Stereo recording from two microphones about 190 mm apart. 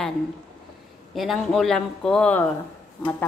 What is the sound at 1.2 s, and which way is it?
Speech, centre (ahead or behind).